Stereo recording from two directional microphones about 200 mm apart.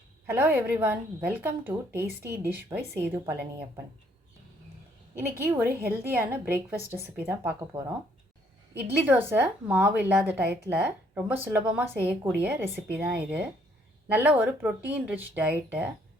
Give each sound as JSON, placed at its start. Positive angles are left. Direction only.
{"t": 0.3, "sound": "a woman's voice", "side_deg": -10}
{"t": 5.5, "sound": "a woman's voice", "side_deg": -10}
{"t": 9.0, "sound": "a woman's voice", "side_deg": -10}